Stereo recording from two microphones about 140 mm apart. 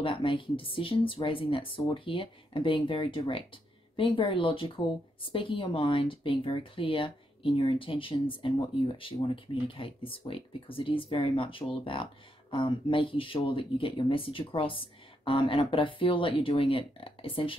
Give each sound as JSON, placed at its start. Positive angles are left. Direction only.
{"t": 0.0, "sound": "a woman's voice", "side_deg": 40}